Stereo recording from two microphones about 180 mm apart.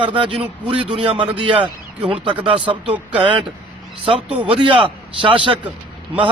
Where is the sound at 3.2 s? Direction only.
25° right (ahead or behind).